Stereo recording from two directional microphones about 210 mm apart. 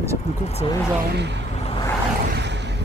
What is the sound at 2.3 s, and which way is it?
Vehicle, 55° right (ahead or behind).